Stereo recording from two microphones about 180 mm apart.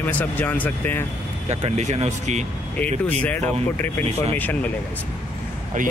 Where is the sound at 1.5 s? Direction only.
40° right (ahead or behind).